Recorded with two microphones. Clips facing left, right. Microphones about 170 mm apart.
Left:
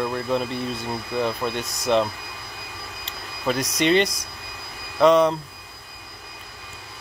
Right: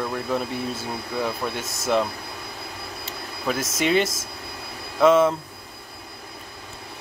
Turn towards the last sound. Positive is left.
turn(degrees=-5)  # may be behind; listen again after turning